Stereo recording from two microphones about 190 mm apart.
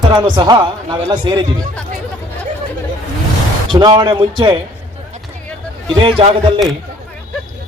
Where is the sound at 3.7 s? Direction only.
25° right (ahead or behind).